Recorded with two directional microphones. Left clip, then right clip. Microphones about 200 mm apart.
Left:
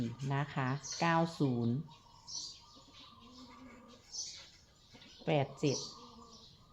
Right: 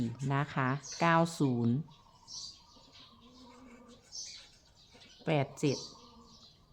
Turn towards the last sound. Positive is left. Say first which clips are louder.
# right 1 dB
turn(degrees=-25)  # may be behind; listen again after turning